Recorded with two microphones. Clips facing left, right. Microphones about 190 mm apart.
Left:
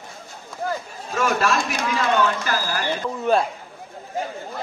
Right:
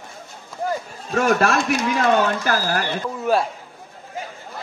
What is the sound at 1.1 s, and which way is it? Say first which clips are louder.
Speech: right 3 dB; 55° right (ahead or behind).